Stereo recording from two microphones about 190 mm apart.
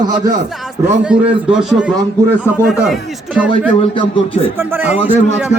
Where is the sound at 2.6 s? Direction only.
5° right (ahead or behind).